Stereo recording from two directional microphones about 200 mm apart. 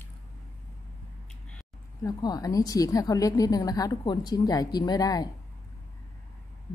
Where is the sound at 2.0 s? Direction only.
20° left (ahead or behind).